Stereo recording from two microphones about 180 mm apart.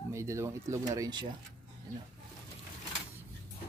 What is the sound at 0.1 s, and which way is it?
Speech, 15° right (ahead or behind).